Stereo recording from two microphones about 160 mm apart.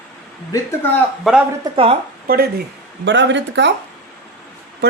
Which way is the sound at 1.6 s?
35° right (ahead or behind).